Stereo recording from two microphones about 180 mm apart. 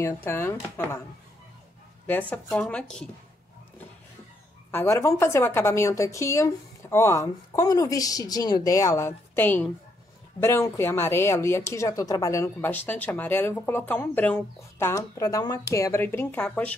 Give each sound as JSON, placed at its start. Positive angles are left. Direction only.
{"t": 0.0, "sound": "speech", "side_deg": 15}
{"t": 2.0, "sound": "speech", "side_deg": 10}
{"t": 4.6, "sound": "speech", "side_deg": 15}